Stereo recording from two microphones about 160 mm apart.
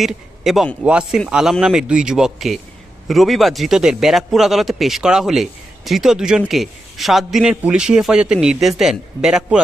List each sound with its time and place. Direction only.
0.0 s a man's voice: centre (ahead or behind)